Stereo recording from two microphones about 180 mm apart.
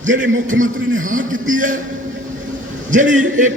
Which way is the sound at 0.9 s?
45° right (ahead or behind).